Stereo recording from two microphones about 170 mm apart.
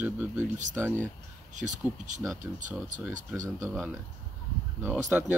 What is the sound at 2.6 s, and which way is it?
Speech, 50° right (ahead or behind).